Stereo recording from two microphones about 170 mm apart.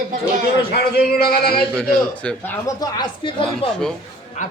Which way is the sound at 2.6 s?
25° left (ahead or behind).